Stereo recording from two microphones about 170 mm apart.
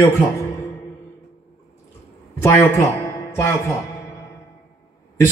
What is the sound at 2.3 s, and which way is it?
Speech, 15° left (ahead or behind).